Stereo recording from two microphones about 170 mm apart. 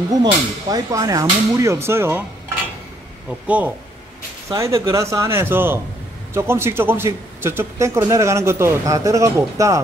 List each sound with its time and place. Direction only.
0.1 s speech: 20° right (ahead or behind)
3.3 s a man's voice: 10° right (ahead or behind)